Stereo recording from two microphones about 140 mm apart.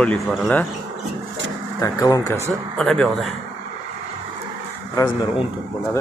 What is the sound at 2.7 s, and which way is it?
Speech, 5° left (ahead or behind).